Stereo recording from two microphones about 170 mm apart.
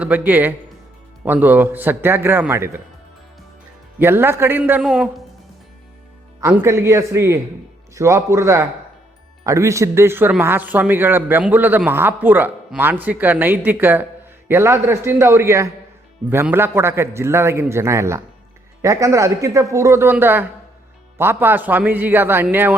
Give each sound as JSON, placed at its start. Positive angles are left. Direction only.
{"t": 0.0, "sound": "a man's voice", "side_deg": -10}
{"t": 3.9, "sound": "a man's voice", "side_deg": -15}
{"t": 6.4, "sound": "a man's voice", "side_deg": -15}